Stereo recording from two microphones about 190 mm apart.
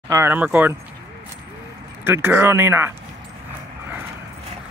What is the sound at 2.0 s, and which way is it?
Speech, 10° right (ahead or behind).